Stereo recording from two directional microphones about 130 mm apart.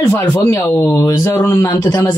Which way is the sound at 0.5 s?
25° left (ahead or behind).